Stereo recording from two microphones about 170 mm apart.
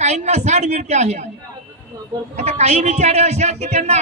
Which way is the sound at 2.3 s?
40° right (ahead or behind).